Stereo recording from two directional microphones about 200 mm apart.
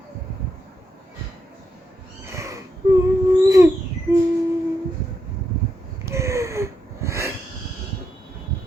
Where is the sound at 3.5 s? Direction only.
15° right (ahead or behind).